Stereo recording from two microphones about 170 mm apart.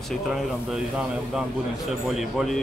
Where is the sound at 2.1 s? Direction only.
Centre (ahead or behind).